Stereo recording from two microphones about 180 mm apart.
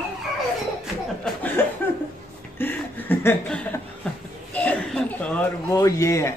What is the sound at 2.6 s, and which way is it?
Chuckle, 10° left (ahead or behind).